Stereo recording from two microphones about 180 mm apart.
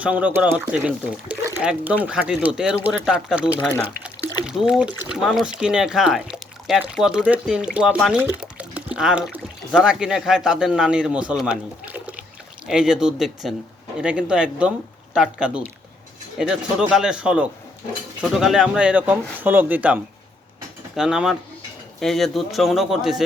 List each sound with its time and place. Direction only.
0.0 s speech: 10° right (ahead or behind)
8.2 s pour: 10° right (ahead or behind)
9.7 s speech: 5° right (ahead or behind)